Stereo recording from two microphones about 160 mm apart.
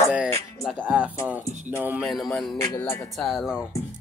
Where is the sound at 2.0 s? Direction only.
Centre (ahead or behind).